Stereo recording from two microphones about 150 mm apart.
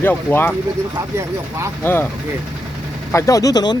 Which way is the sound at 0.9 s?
20° right (ahead or behind).